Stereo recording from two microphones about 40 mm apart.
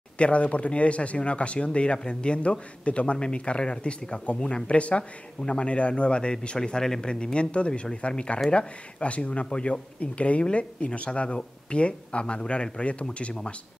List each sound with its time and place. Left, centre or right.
0.2 s speech: left